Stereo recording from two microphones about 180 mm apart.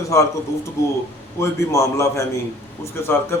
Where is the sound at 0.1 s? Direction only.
15° left (ahead or behind).